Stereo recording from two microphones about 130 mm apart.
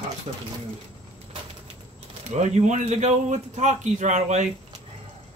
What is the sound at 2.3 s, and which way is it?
Speech, 65° right (ahead or behind).